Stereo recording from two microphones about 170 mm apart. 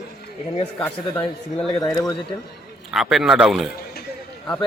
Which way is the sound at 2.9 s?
Centre (ahead or behind).